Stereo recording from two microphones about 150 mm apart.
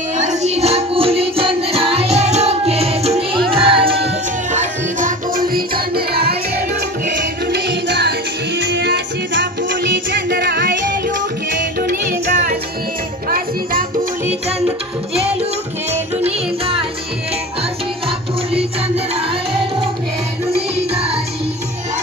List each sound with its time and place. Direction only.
0.2 s music: 50° right (ahead or behind)
4.5 s music: 55° right (ahead or behind); by 6.3 s 90° right
11.8 s music: 75° right (ahead or behind)
15.9 s music: 40° right (ahead or behind)
20.5 s music: 40° right (ahead or behind)